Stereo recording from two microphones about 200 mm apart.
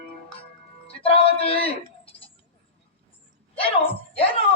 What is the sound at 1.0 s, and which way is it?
Music, 30° left (ahead or behind).